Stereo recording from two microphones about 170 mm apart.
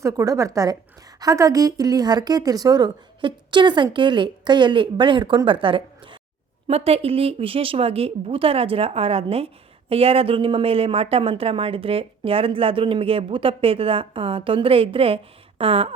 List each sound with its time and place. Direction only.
0.0 s speech: 20° right (ahead or behind)